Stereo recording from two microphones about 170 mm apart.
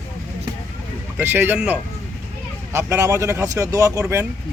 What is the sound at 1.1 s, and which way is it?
Speech, 10° right (ahead or behind).